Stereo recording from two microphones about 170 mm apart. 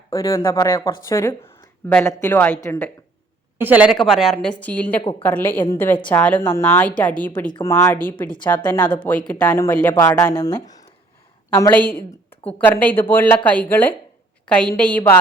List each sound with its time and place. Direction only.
0.1 s a woman's voice: 20° left (ahead or behind)
3.6 s a woman's voice: 10° right (ahead or behind); by 15.2 s 10° left (ahead or behind)